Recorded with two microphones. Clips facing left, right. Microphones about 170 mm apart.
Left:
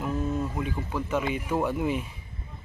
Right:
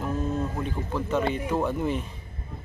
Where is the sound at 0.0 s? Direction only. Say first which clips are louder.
Right 1 dB; 5° left (ahead or behind).